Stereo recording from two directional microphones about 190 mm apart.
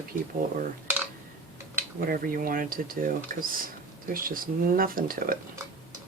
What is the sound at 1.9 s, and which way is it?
Speech, 50° right (ahead or behind).